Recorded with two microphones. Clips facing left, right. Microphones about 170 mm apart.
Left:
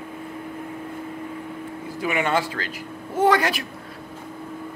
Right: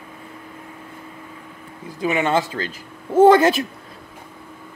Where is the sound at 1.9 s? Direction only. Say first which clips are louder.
Right 3 dB; 25° right (ahead or behind).